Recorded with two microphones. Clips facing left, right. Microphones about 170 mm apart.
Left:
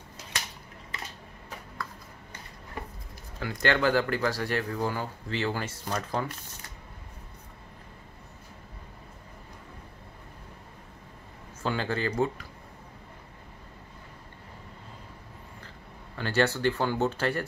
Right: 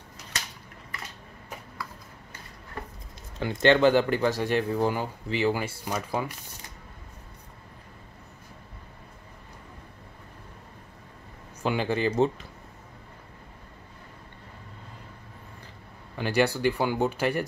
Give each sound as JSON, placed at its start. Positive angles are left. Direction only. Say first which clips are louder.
{"t": 3.3, "sound": "speech", "louder": "right 6 dB", "side_deg": -25}
{"t": 11.6, "sound": "speech", "louder": "right 4 dB", "side_deg": -15}
{"t": 16.2, "sound": "speech", "louder": "right 2 dB", "side_deg": -15}